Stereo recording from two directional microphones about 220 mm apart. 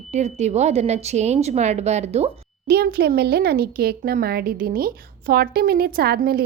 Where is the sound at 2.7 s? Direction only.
45° right (ahead or behind).